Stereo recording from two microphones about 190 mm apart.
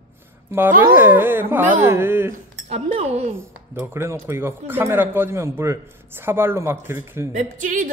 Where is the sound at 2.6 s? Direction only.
35° right (ahead or behind).